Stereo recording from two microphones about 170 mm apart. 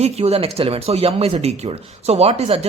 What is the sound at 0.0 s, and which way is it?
Speech, 35° right (ahead or behind).